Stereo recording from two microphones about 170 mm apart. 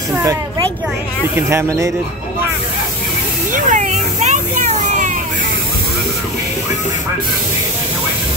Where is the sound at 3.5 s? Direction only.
50° right (ahead or behind).